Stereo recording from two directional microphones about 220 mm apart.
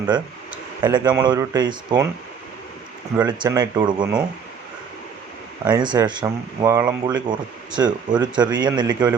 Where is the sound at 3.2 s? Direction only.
20° right (ahead or behind).